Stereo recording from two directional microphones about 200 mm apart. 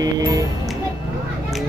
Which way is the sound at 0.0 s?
20° right (ahead or behind).